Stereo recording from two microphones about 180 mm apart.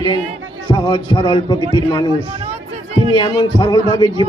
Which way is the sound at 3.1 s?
25° left (ahead or behind).